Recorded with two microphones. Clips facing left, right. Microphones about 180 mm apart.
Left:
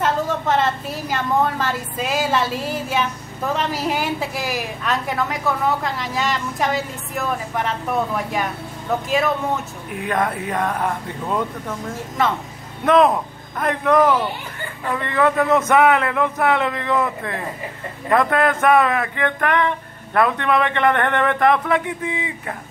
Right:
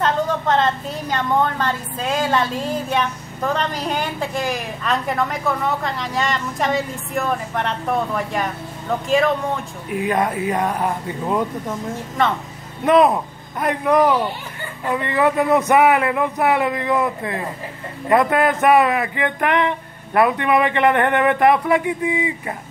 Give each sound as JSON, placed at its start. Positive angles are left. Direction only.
{"t": 0.0, "sound": "a woman's voice", "side_deg": 5}
{"t": 9.8, "sound": "speech", "side_deg": -5}
{"t": 12.8, "sound": "a woman's voice", "side_deg": -5}
{"t": 18.6, "sound": "speech", "side_deg": -15}